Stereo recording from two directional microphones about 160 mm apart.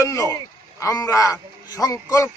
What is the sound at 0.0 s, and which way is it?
A man's voice, 20° left (ahead or behind).